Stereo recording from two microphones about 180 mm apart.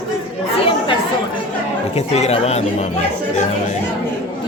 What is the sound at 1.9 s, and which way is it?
Speech, 35° left (ahead or behind).